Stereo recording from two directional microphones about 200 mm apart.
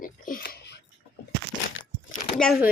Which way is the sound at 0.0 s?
45° left (ahead or behind).